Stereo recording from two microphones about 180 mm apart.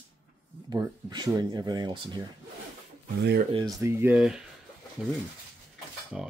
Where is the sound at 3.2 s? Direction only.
70° right (ahead or behind).